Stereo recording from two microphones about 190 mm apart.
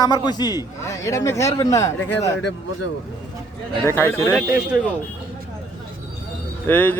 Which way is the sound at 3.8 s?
15° left (ahead or behind).